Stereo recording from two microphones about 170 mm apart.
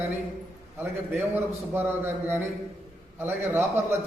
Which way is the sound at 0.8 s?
10° right (ahead or behind).